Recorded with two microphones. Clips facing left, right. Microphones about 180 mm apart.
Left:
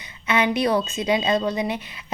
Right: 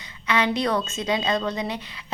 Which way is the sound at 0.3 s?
20° left (ahead or behind).